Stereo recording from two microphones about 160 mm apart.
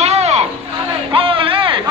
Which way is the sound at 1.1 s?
35° right (ahead or behind).